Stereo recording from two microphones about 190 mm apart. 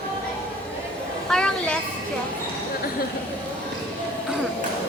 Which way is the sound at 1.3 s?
5° left (ahead or behind).